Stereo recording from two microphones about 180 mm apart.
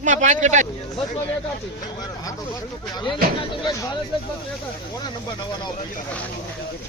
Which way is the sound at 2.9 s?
25° left (ahead or behind).